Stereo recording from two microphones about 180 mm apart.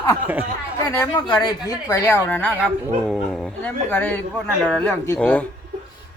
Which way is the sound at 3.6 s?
10° left (ahead or behind).